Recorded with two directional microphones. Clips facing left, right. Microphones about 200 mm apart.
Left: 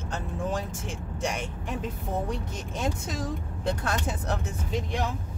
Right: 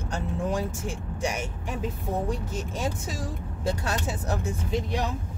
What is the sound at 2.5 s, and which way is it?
Speech, 10° right (ahead or behind).